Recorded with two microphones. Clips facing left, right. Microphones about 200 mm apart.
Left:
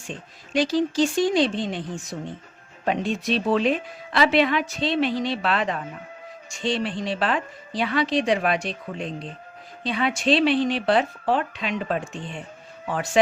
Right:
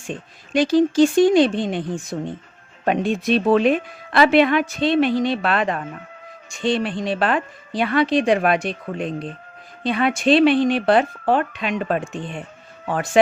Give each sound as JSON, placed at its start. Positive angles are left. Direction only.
{"t": 0.1, "sound": "speech", "side_deg": -55}